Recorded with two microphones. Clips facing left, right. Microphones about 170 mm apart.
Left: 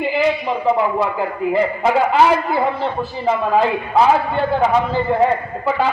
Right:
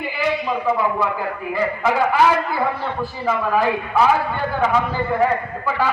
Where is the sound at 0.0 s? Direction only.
20° left (ahead or behind).